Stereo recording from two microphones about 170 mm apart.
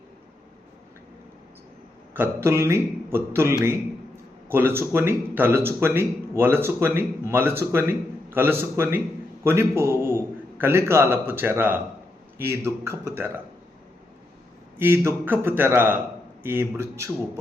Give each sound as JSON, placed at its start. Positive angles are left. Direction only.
{"t": 2.1, "sound": "a man's voice", "side_deg": -15}
{"t": 14.8, "sound": "speech", "side_deg": -15}